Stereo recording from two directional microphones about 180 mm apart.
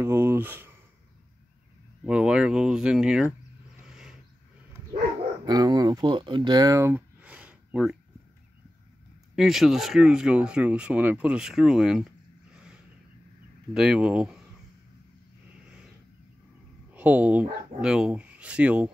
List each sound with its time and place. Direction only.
0.0 s speech: 15° right (ahead or behind)
2.0 s speech: 5° right (ahead or behind)
3.8 s a sound: 5° right (ahead or behind)
5.5 s speech: 20° right (ahead or behind); by 7.9 s 5° right (ahead or behind)
9.3 s speech: centre (ahead or behind)
12.5 s a sound: 5° right (ahead or behind)
13.7 s speech: 5° right (ahead or behind)
15.6 s vehicle: 5° right (ahead or behind)
16.9 s speech: 10° right (ahead or behind)